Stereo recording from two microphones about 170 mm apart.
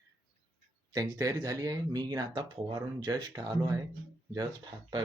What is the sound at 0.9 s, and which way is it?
Speech, 20° right (ahead or behind).